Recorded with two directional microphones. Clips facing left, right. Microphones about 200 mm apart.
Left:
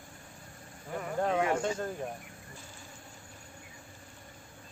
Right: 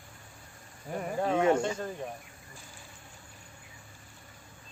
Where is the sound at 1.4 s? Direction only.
25° right (ahead or behind).